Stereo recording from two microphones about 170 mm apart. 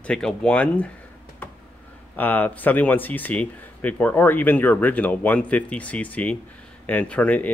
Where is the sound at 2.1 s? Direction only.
10° left (ahead or behind).